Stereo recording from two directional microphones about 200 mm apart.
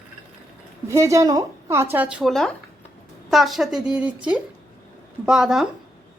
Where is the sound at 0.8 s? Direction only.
15° right (ahead or behind).